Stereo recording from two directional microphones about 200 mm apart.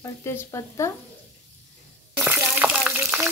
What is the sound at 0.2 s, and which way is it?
Speech, 15° left (ahead or behind).